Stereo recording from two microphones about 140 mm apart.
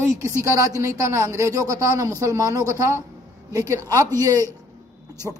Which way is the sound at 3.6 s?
20° right (ahead or behind).